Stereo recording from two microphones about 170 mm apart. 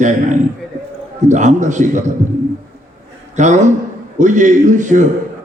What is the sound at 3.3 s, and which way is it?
A man's voice, 45° right (ahead or behind).